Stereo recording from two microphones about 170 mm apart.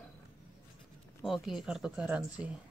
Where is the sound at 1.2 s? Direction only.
Centre (ahead or behind).